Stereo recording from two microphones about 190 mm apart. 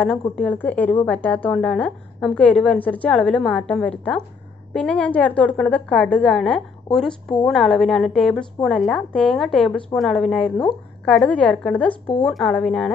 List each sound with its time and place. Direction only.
0.4 s a woman's voice: 10° left (ahead or behind)
11.9 s speech: 25° left (ahead or behind)
12.3 s a woman's voice: centre (ahead or behind)